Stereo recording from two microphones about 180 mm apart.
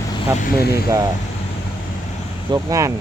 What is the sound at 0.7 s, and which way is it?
Speech, 20° right (ahead or behind).